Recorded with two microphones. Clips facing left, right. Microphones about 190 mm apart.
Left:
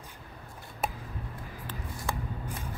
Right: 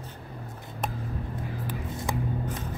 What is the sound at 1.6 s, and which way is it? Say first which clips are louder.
Music: right 2 dB; 15° right (ahead or behind).